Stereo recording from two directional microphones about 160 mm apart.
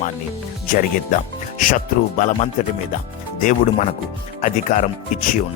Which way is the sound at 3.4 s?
50° left (ahead or behind).